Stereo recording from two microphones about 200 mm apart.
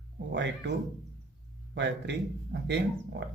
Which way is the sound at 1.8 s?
60° right (ahead or behind).